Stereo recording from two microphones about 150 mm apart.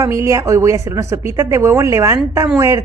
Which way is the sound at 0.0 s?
20° right (ahead or behind).